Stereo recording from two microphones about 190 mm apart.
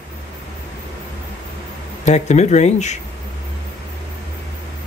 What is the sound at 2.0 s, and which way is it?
Speech, 35° left (ahead or behind).